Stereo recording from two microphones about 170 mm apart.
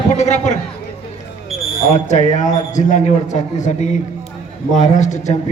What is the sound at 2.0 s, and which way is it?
A man's voice, 45° left (ahead or behind).